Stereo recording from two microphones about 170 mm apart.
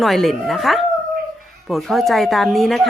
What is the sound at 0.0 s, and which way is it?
Speech, centre (ahead or behind).